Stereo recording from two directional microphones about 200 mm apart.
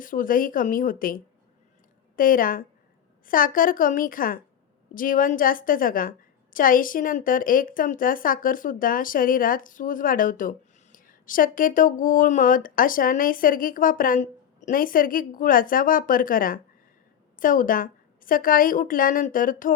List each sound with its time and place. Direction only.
0.0 s speech: 40° left (ahead or behind)